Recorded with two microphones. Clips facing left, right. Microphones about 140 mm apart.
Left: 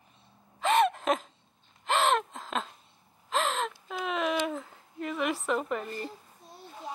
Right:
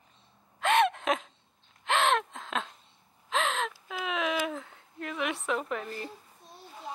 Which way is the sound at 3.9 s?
Centre (ahead or behind).